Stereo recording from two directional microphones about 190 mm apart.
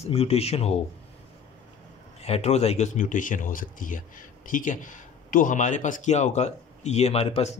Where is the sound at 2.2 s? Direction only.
35° left (ahead or behind).